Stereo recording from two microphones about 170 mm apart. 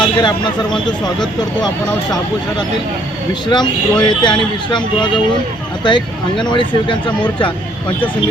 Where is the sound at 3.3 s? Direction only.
25° left (ahead or behind).